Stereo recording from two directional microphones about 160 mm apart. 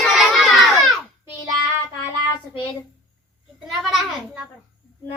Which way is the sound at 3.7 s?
Centre (ahead or behind).